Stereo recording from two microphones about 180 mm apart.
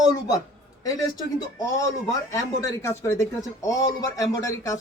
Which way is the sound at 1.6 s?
20° left (ahead or behind).